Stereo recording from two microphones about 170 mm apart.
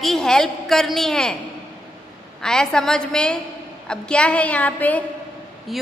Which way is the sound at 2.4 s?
5° left (ahead or behind).